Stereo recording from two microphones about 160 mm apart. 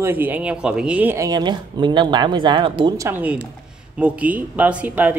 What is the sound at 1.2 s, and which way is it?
Speech, 25° right (ahead or behind).